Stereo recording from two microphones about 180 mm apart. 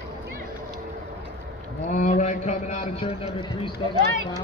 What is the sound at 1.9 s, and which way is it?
A man's voice, 40° left (ahead or behind).